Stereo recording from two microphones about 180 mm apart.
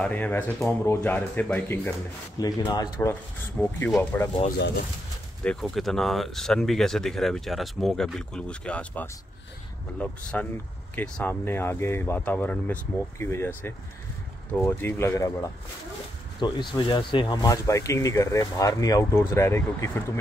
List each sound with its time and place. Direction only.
0.0 s speech: 10° left (ahead or behind)
2.3 s speech: 20° left (ahead or behind)
3.6 s speech: 10° left (ahead or behind)
5.4 s speech: 5° left (ahead or behind)
16.3 s speech: 25° left (ahead or behind)